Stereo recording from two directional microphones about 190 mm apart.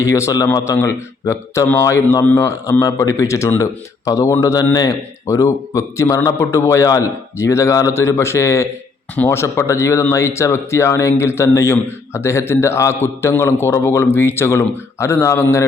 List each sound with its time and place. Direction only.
0.0 s speech: 15° left (ahead or behind)